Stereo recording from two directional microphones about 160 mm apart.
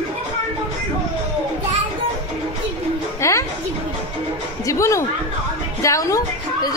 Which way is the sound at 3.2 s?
20° left (ahead or behind).